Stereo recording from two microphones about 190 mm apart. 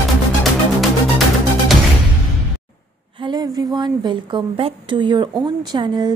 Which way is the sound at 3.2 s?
20° right (ahead or behind).